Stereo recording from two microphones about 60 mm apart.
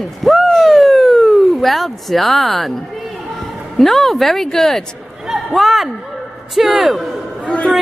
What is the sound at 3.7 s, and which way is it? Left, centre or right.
A man's voice, centre.